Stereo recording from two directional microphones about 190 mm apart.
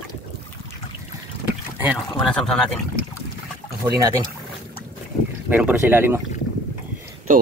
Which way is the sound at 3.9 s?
20° right (ahead or behind).